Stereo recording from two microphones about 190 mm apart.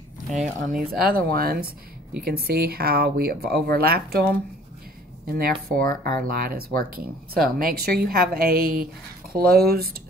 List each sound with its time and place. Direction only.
0.3 s speech: 40° right (ahead or behind)